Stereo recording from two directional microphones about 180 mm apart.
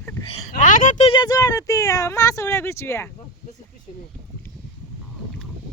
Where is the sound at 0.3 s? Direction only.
40° left (ahead or behind).